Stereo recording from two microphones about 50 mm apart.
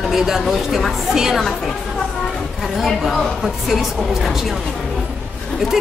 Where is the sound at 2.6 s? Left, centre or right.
Centre.